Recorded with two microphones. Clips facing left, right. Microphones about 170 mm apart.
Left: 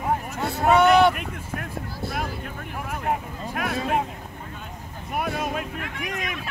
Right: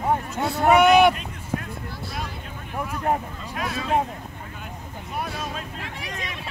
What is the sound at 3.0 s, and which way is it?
Vehicle, 40° right (ahead or behind).